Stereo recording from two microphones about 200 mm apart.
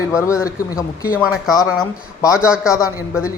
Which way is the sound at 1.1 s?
Centre (ahead or behind).